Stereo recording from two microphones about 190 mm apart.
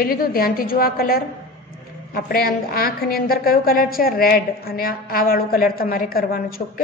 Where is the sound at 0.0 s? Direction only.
50° left (ahead or behind).